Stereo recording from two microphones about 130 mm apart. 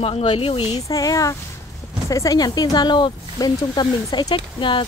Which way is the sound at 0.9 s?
25° left (ahead or behind).